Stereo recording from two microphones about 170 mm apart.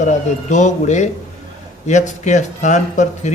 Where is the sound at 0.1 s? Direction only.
45° left (ahead or behind).